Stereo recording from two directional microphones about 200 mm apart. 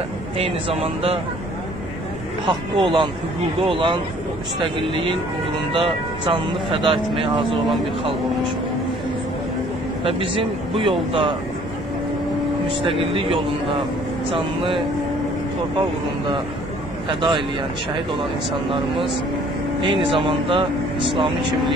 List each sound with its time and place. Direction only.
0.4 s speech: 30° right (ahead or behind)
2.4 s speech: 25° right (ahead or behind)
5.7 s speech: 25° right (ahead or behind)
10.0 s speech: 25° right (ahead or behind)
12.8 s speech: 25° right (ahead or behind)
17.1 s speech: 25° right (ahead or behind)
19.8 s speech: 25° right (ahead or behind)